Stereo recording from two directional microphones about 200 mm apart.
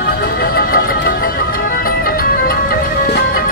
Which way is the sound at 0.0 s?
50° left (ahead or behind).